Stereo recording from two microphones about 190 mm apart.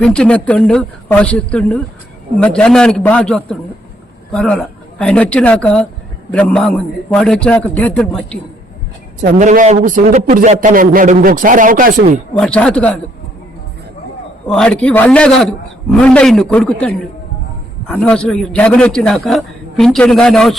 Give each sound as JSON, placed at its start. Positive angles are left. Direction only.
{"t": 0.0, "sound": "a man's voice", "side_deg": 5}
{"t": 9.2, "sound": "a man's voice", "side_deg": -40}
{"t": 12.3, "sound": "a man's voice", "side_deg": 5}
{"t": 14.4, "sound": "a man's voice", "side_deg": 5}